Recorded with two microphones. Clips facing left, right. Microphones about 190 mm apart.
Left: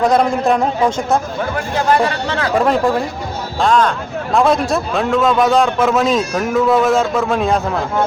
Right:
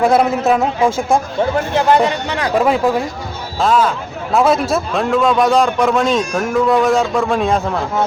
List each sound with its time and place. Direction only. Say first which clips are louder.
0.0 s a man's voice: right 1 dB; 5° right (ahead or behind)
1.4 s speech: right 4 dB; 20° right (ahead or behind)
2.6 s a man's voice: right 1 dB; 5° right (ahead or behind)